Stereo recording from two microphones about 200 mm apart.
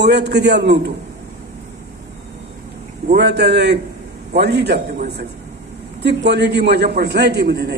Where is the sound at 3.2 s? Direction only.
55° right (ahead or behind).